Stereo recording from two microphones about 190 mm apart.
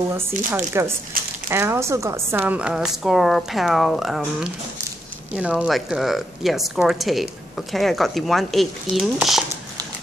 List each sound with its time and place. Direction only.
0.5 s speech: 10° right (ahead or behind)
1.1 s speech: 50° right (ahead or behind)
1.5 s a woman's voice: 15° right (ahead or behind)